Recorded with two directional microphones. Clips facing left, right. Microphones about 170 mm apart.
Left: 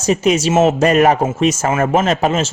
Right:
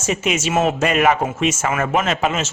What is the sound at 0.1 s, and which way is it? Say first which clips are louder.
Speech: left 6 dB; 35° left (ahead or behind).